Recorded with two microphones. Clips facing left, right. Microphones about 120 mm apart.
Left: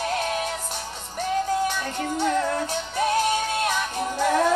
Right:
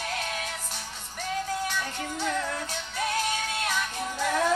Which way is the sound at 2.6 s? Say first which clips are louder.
Left 7 dB; 25° left (ahead or behind).